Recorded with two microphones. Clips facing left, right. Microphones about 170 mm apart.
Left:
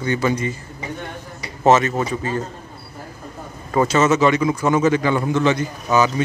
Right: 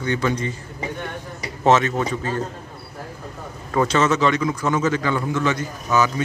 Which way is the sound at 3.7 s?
5° left (ahead or behind).